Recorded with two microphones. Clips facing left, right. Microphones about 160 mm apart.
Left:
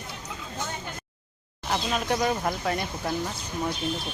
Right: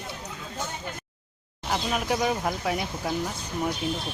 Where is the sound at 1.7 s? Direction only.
5° right (ahead or behind).